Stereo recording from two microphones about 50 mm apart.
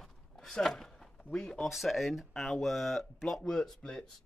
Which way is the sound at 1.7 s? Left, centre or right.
Centre.